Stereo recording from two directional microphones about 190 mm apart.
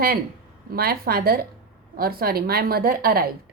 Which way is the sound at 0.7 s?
55° right (ahead or behind).